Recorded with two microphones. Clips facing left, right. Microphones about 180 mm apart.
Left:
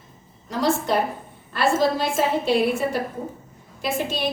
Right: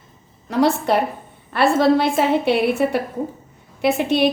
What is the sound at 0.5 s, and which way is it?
A woman's voice, 65° right (ahead or behind).